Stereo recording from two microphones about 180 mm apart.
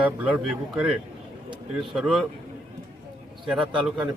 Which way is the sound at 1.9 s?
Centre (ahead or behind).